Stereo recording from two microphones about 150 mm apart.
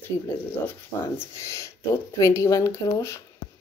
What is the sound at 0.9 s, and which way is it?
Speech, 30° left (ahead or behind).